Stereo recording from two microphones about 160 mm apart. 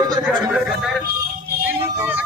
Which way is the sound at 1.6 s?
10° right (ahead or behind).